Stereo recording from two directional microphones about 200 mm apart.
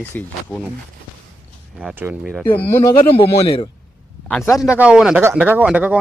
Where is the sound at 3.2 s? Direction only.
25° left (ahead or behind).